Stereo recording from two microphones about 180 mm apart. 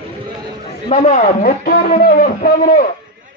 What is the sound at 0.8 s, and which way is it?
A man's voice, 40° left (ahead or behind).